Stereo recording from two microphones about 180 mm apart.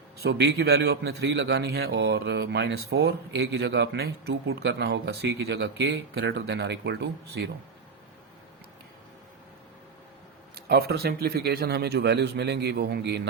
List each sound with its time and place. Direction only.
0.2 s a man's voice: 70° right (ahead or behind)
10.5 s speech: 60° right (ahead or behind)